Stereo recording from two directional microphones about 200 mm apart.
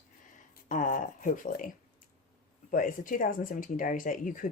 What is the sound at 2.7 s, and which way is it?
Speech, 40° left (ahead or behind).